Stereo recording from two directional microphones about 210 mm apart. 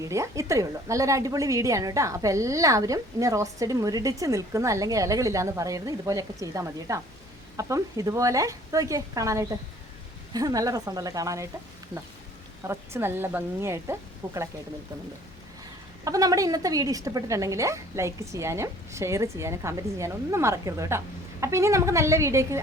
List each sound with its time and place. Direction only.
0.0 s a woman's voice: 15° right (ahead or behind)
12.6 s a woman's voice: 10° right (ahead or behind)
16.0 s a woman's voice: 15° right (ahead or behind)